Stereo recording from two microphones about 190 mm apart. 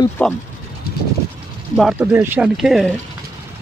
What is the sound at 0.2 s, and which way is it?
Speech, 5° left (ahead or behind).